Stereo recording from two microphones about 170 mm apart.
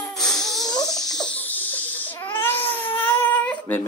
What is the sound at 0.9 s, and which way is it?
Crying, 5° left (ahead or behind).